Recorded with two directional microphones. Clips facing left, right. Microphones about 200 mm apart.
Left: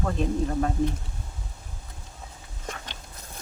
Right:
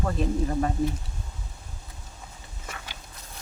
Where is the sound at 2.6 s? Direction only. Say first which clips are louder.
Left 4 dB; 5° right (ahead or behind).